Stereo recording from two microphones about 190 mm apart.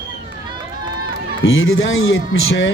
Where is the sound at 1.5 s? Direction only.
90° left.